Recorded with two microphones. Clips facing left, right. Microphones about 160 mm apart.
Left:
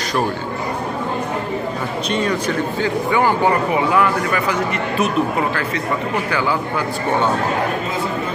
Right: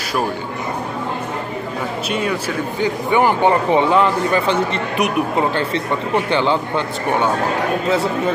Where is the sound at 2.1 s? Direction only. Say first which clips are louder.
Left 2 dB; 10° right (ahead or behind).